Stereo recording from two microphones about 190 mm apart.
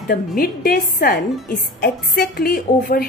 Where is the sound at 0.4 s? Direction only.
50° left (ahead or behind).